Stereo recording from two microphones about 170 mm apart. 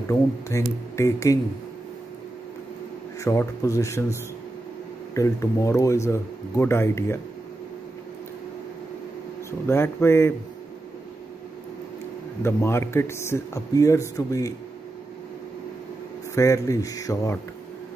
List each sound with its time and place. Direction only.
0.1 s speech: 15° left (ahead or behind)
3.3 s speech: 20° left (ahead or behind)
9.5 s speech: 15° left (ahead or behind)
12.4 s speech: 15° left (ahead or behind)
16.3 s speech: 20° left (ahead or behind)